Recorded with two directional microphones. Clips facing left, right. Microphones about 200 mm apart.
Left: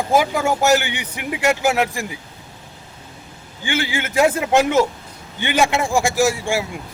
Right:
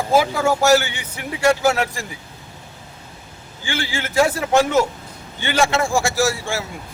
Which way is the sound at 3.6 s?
20° left (ahead or behind).